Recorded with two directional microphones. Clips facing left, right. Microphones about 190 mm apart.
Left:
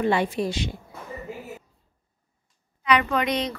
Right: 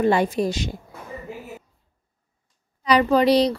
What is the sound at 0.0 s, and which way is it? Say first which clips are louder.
Speech: right 4 dB; 40° right (ahead or behind).